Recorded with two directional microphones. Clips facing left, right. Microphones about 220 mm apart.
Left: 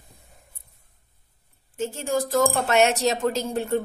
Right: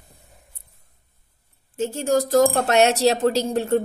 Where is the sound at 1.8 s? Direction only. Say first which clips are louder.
Right 5 dB; 40° right (ahead or behind).